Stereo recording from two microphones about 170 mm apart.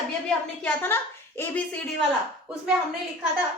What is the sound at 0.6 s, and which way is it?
A woman's voice, 10° left (ahead or behind).